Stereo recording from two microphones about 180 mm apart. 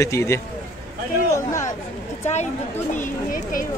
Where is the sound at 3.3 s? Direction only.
50° left (ahead or behind).